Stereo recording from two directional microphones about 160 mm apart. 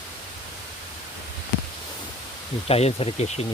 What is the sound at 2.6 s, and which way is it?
Speech, 40° left (ahead or behind).